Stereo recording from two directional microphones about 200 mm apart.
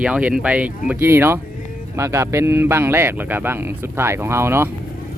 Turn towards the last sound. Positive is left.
turn(degrees=-10)  # may be behind; listen again after turning